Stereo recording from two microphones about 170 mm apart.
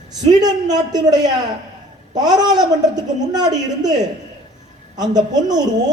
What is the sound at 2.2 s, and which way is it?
A woman's voice, 25° right (ahead or behind).